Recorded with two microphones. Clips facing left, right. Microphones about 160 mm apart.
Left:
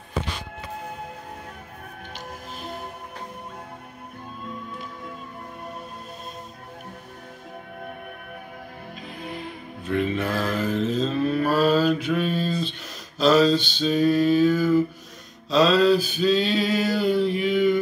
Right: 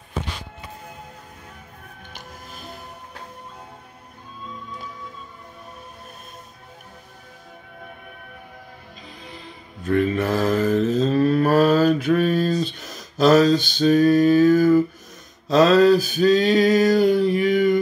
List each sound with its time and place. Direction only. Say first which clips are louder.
9.2 s music: left 8 dB; 60° left (ahead or behind)
9.8 s mantra: right 4 dB; 45° right (ahead or behind)
15.4 s male singing: right 4 dB; 45° right (ahead or behind)